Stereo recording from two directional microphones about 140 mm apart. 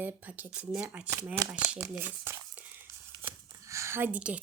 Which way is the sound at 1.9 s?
15° right (ahead or behind).